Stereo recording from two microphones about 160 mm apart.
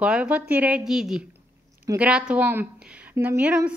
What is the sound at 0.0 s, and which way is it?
A woman's voice, 5° right (ahead or behind).